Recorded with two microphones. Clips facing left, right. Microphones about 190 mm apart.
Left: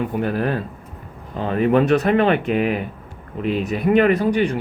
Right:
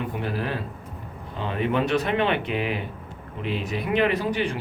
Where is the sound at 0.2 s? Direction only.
50° left (ahead or behind).